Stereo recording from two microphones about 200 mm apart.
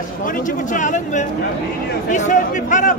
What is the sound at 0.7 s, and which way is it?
Speech, 40° left (ahead or behind).